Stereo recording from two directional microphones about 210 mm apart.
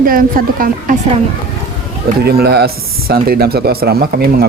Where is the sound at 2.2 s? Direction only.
50° right (ahead or behind).